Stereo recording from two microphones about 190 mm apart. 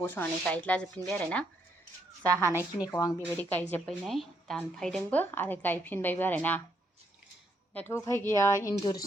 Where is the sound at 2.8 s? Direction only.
15° left (ahead or behind).